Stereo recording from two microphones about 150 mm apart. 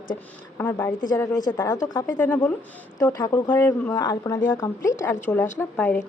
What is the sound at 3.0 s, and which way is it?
Speech, 25° left (ahead or behind).